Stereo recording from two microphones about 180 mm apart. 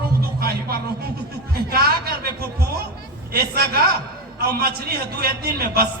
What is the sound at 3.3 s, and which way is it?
Speech, 60° right (ahead or behind).